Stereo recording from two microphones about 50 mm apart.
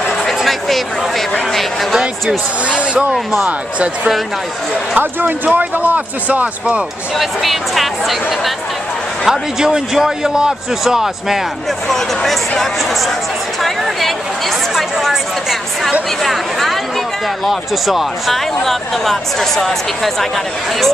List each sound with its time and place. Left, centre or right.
0.4 s a sound: centre
2.7 s speech: right
4.9 s a man's voice: right
7.2 s speech: centre
9.3 s a man's voice: centre
11.9 s speech: centre
14.8 s speech: centre
16.3 s speech: centre